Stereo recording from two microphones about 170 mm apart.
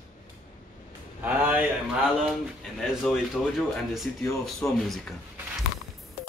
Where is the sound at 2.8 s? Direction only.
Centre (ahead or behind).